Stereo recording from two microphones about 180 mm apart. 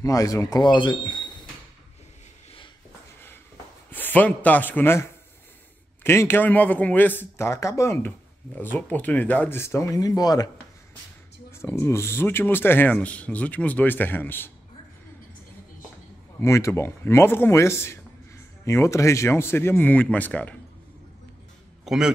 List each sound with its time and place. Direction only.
0.0 s speech: 20° left (ahead or behind)
3.9 s a man's voice: 10° left (ahead or behind)
11.5 s a man's voice: 15° left (ahead or behind)
16.3 s a man's voice: 15° left (ahead or behind)
21.8 s a man's voice: 5° right (ahead or behind)